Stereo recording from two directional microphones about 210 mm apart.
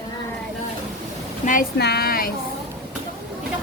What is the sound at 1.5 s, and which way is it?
Speech, 45° left (ahead or behind).